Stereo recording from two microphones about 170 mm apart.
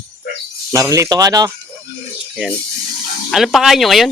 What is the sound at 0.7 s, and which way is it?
Speech, 20° right (ahead or behind).